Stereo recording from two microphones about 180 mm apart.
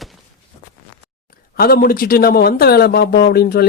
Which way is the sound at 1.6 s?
55° left (ahead or behind).